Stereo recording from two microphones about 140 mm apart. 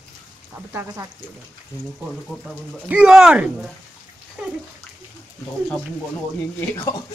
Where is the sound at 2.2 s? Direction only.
Centre (ahead or behind).